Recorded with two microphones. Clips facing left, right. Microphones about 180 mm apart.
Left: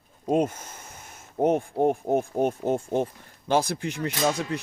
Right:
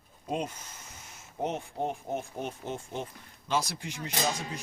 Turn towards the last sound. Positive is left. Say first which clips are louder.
# left 7 dB
turn(degrees=65)  # may be behind; listen again after turning